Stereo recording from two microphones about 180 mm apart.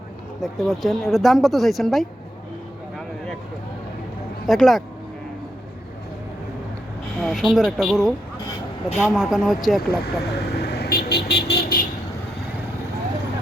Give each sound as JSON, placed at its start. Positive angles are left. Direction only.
{"t": 0.4, "sound": "speech", "side_deg": 0}
{"t": 4.4, "sound": "speech", "side_deg": 0}
{"t": 7.2, "sound": "speech", "side_deg": 0}
{"t": 10.0, "sound": "speech", "side_deg": 65}